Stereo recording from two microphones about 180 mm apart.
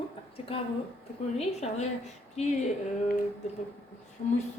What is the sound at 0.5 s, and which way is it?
Speech, 30° left (ahead or behind).